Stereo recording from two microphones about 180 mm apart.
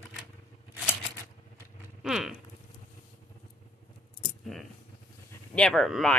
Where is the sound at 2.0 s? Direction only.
5° right (ahead or behind).